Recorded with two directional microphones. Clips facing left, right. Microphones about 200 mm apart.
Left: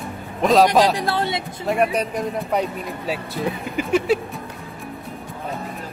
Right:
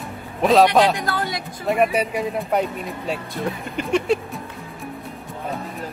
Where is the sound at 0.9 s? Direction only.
30° left (ahead or behind).